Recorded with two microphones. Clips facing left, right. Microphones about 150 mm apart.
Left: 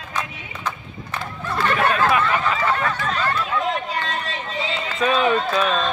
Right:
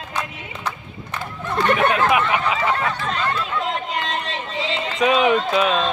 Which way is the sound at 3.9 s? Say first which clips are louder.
Right 1 dB; 20° right (ahead or behind).